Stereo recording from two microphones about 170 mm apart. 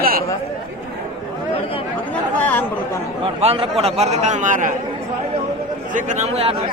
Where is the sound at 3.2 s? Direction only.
35° right (ahead or behind).